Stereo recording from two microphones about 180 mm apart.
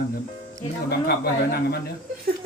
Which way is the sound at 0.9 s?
65° left (ahead or behind).